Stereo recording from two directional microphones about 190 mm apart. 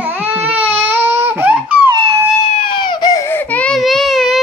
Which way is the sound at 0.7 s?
10° right (ahead or behind).